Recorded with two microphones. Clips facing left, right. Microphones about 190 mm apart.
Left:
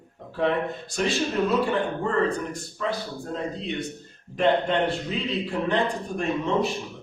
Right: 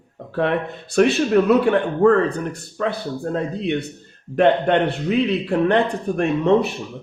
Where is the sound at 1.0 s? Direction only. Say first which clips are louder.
Right 9 dB; 65° right (ahead or behind).